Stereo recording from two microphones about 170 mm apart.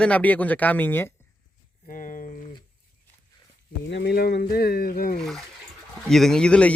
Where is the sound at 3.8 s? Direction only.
85° left; by 5.1 s 60° left (ahead or behind).